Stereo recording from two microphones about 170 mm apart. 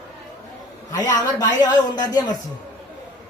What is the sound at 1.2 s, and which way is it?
Speech, 25° left (ahead or behind).